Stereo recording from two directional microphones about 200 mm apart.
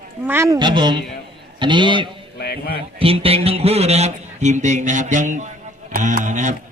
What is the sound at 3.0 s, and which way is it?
Speech, 30° right (ahead or behind).